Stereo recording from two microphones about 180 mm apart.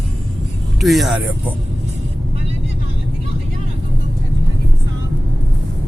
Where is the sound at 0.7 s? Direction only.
Centre (ahead or behind).